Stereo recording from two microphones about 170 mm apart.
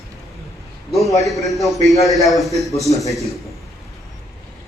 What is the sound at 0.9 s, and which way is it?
A man's voice, centre (ahead or behind).